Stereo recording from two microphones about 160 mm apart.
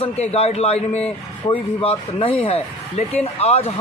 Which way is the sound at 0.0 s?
40° left (ahead or behind).